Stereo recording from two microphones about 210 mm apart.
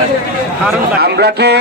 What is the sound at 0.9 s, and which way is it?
Speech, 50° right (ahead or behind).